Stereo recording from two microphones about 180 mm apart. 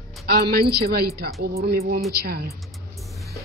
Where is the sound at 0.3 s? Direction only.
60° right (ahead or behind).